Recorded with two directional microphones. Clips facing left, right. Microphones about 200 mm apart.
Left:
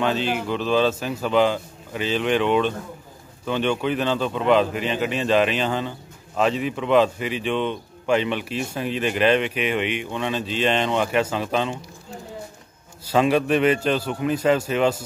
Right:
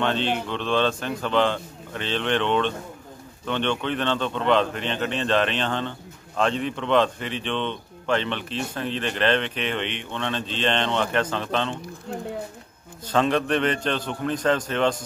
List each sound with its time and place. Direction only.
0.0 s speech: 5° left (ahead or behind)
12.1 s speech: 65° right (ahead or behind)
13.0 s speech: 10° left (ahead or behind)